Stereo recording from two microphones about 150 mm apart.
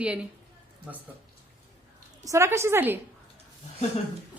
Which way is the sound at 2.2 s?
20° right (ahead or behind).